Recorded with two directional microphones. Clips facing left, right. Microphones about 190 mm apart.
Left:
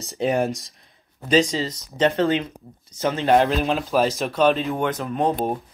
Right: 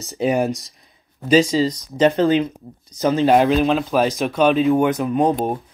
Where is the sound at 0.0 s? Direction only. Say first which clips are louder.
Right 2 dB; centre (ahead or behind).